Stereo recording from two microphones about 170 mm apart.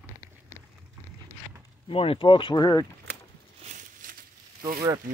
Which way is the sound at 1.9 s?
35° left (ahead or behind).